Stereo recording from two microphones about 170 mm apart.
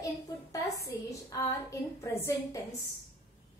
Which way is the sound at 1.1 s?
20° left (ahead or behind).